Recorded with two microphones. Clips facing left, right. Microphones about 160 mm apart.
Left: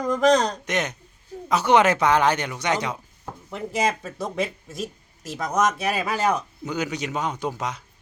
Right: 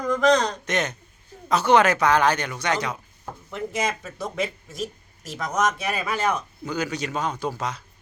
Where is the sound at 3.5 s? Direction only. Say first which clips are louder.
Left 2 dB; 35° left (ahead or behind).